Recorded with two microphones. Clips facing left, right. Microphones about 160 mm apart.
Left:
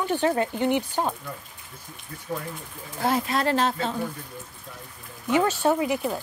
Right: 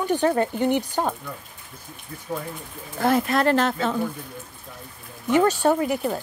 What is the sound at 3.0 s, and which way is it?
Speech, 55° right (ahead or behind).